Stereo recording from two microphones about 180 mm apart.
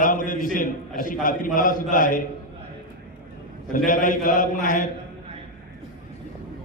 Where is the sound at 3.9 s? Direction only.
45° left (ahead or behind).